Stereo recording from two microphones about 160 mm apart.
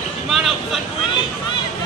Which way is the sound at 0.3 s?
Centre (ahead or behind).